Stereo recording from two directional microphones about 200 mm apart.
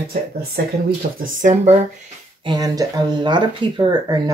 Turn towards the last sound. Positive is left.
turn(degrees=-20)  # may be behind; listen again after turning